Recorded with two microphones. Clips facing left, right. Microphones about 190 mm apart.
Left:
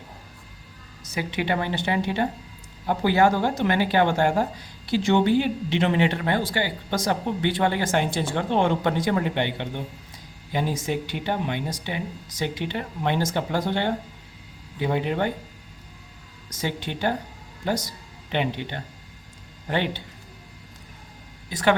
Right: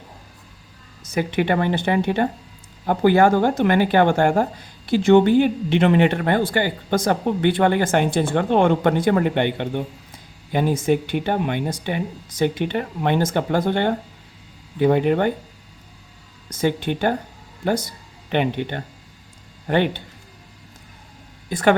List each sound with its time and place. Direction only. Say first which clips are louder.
1.1 s speech: right 6 dB; 50° right (ahead or behind)
16.5 s speech: right 8 dB; 55° right (ahead or behind)
21.5 s speech: right 4 dB; 50° right (ahead or behind)